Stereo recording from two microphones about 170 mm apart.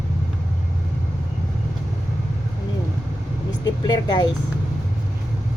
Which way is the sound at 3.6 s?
25° left (ahead or behind).